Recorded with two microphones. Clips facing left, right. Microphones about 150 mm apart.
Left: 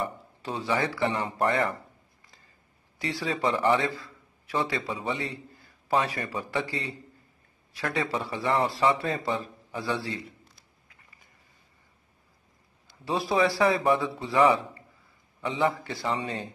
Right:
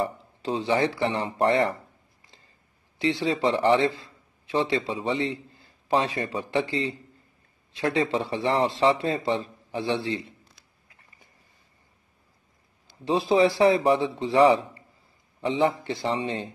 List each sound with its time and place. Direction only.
0.0 s speech: 30° right (ahead or behind)
3.0 s speech: 25° right (ahead or behind)
13.0 s speech: 25° right (ahead or behind)